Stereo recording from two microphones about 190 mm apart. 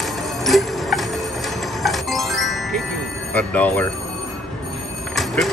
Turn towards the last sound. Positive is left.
turn(degrees=0)  # may be behind; listen again after turning